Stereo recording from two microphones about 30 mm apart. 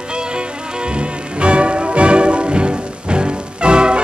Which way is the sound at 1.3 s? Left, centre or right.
Right.